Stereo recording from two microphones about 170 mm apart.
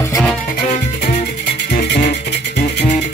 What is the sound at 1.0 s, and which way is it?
Music, 75° left (ahead or behind).